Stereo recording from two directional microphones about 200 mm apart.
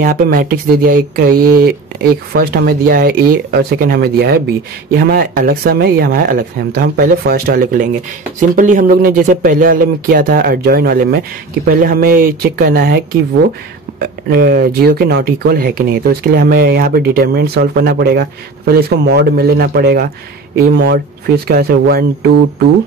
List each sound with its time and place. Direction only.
0.0 s speech: 45° right (ahead or behind)
14.3 s speech: 50° right (ahead or behind)